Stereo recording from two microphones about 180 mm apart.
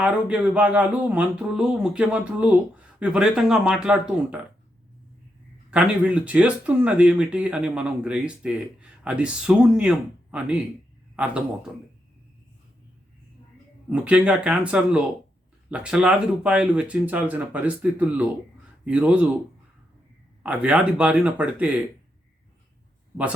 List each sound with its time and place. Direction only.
0.0 s speech: 5° right (ahead or behind)
5.7 s speech: 5° right (ahead or behind)
13.9 s speech: 5° right (ahead or behind)
20.4 s speech: 5° right (ahead or behind)